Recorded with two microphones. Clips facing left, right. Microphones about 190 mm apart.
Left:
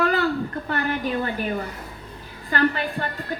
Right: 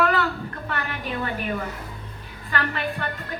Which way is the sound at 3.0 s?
35° left (ahead or behind).